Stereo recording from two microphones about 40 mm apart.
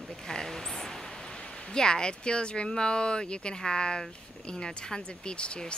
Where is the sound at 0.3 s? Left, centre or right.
Centre.